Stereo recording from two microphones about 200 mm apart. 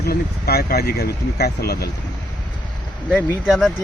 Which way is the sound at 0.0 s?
50° left (ahead or behind).